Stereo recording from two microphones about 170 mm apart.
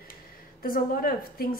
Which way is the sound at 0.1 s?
60° left (ahead or behind).